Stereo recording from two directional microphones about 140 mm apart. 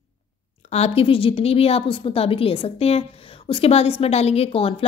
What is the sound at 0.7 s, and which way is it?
A woman's voice, 45° left (ahead or behind).